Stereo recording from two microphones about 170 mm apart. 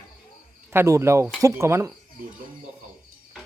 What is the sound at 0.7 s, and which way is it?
Speech, 15° right (ahead or behind).